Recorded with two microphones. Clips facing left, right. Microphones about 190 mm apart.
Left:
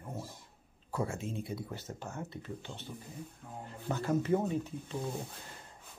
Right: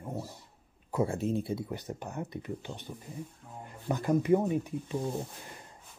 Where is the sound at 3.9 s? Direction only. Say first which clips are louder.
Right 4 dB; 15° right (ahead or behind).